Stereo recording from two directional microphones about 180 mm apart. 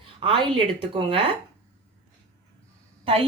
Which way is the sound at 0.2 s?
30° right (ahead or behind).